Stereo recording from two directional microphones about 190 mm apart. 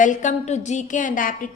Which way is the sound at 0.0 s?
40° left (ahead or behind).